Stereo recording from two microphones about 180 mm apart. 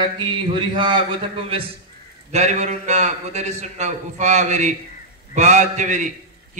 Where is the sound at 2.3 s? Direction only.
40° right (ahead or behind).